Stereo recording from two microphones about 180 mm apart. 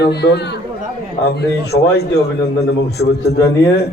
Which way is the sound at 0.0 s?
65° left (ahead or behind).